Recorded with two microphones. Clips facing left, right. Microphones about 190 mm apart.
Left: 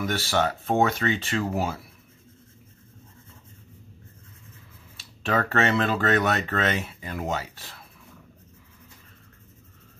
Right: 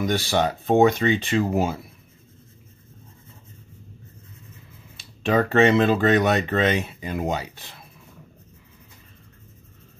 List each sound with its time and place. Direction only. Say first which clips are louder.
0.0 s speech: right 3 dB; 20° right (ahead or behind)
4.9 s speech: right 5 dB; 15° right (ahead or behind)